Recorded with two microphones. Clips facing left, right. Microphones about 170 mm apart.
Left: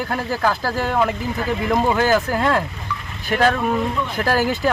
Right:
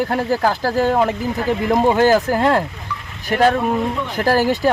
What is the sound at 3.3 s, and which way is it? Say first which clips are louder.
Speech: right 3 dB; 25° right (ahead or behind).